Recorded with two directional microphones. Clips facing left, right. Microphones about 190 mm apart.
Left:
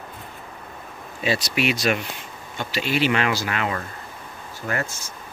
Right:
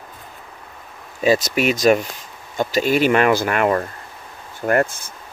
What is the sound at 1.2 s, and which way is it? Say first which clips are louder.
Speech: right 6 dB; 40° right (ahead or behind).